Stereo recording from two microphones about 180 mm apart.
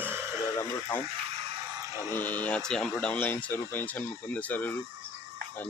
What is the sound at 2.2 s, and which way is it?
Speech, 10° left (ahead or behind).